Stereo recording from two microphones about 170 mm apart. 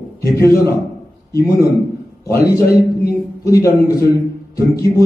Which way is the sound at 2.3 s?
65° left (ahead or behind).